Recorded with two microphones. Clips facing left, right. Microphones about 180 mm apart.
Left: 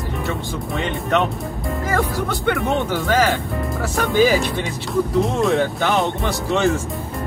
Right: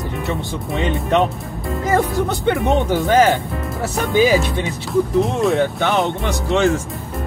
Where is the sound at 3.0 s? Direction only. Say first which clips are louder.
Right 4 dB; 25° right (ahead or behind).